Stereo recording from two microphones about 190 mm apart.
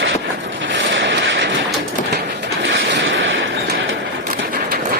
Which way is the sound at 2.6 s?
65° right (ahead or behind).